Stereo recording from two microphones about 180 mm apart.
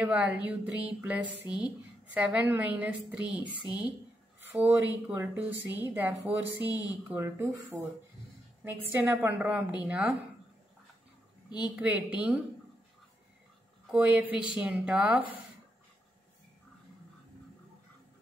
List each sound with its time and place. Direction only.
0.0 s a woman's voice: 10° right (ahead or behind)
6.7 s speech: 20° left (ahead or behind)
7.1 s a woman's voice: 15° right (ahead or behind)
11.5 s a woman's voice: 5° right (ahead or behind)
13.8 s a woman's voice: 5° right (ahead or behind)